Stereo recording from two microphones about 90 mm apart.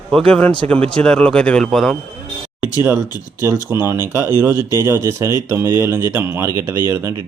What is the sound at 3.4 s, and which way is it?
Speech, 25° right (ahead or behind).